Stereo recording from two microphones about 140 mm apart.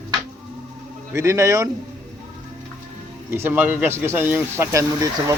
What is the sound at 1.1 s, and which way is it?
Speech, 20° right (ahead or behind).